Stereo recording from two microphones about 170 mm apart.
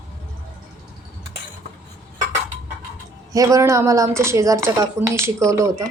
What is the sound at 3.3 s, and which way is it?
Speech, 20° right (ahead or behind).